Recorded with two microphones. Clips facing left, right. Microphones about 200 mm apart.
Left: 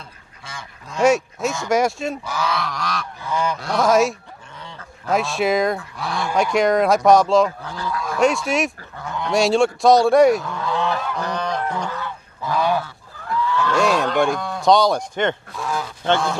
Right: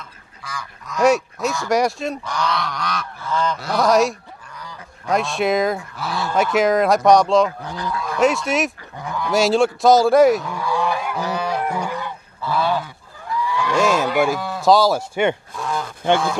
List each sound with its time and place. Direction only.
0.0 s goose: 25° left (ahead or behind)
1.0 s speech: centre (ahead or behind)
3.2 s goose: 15° left (ahead or behind)
3.5 s speech: centre (ahead or behind)
7.6 s goose: 15° right (ahead or behind)
8.0 s fowl: centre (ahead or behind)
9.0 s goose: 15° right (ahead or behind)
9.3 s speech: centre (ahead or behind)
10.7 s goose: 10° right (ahead or behind)
12.4 s goose: 15° left (ahead or behind)
12.8 s goose: 10° right (ahead or behind)
13.7 s speech: 5° right (ahead or behind)